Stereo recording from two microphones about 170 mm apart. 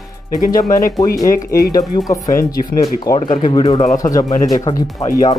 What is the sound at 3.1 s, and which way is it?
Speech, 30° left (ahead or behind).